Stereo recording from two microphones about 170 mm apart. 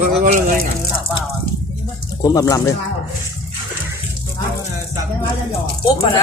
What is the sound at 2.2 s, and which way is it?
Speech, 20° left (ahead or behind).